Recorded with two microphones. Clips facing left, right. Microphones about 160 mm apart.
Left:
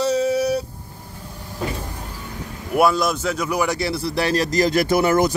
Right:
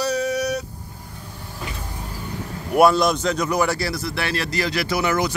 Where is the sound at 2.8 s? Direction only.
Centre (ahead or behind); by 5.4 s 45° left (ahead or behind).